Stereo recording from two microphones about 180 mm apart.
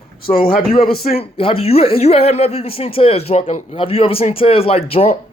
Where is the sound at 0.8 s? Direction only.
55° left (ahead or behind).